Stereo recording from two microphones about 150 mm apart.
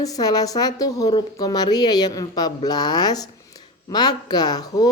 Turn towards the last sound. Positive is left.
turn(degrees=25)  # may be behind; listen again after turning